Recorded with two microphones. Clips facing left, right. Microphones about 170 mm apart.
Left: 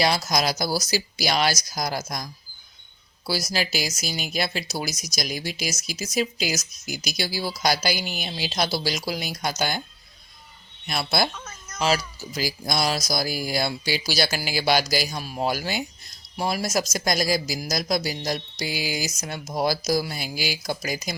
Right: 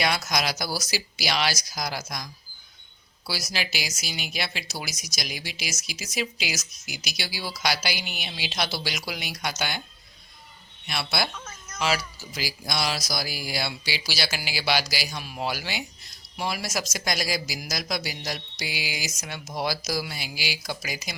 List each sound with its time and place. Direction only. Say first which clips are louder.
0.3 s speech: left 4 dB; 40° left (ahead or behind)
3.2 s speech: left 5 dB; 40° left (ahead or behind)
10.8 s speech: left 4 dB; 45° left (ahead or behind)